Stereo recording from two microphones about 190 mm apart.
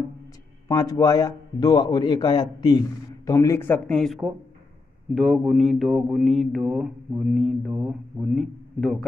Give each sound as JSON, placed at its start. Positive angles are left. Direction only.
{"t": 0.7, "sound": "a man's voice", "side_deg": 20}